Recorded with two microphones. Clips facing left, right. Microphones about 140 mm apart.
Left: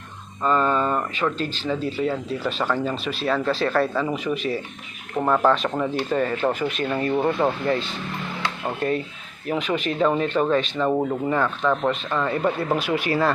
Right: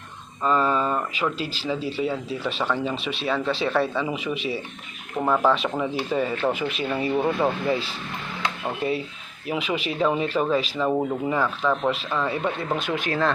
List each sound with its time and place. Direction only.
0.4 s speech: 5° right (ahead or behind)
9.5 s speech: 5° right (ahead or behind)